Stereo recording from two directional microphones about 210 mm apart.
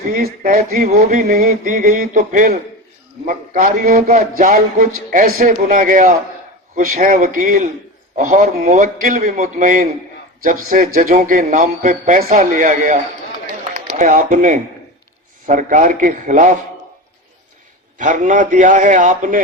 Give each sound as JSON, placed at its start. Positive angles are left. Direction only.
{"t": 0.1, "sound": "music", "side_deg": -40}
{"t": 13.7, "sound": "speech", "side_deg": -35}
{"t": 15.4, "sound": "music", "side_deg": -40}
{"t": 17.9, "sound": "music", "side_deg": -40}